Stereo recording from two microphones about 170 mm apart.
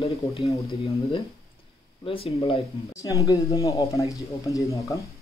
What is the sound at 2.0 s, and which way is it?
Speech, 35° left (ahead or behind).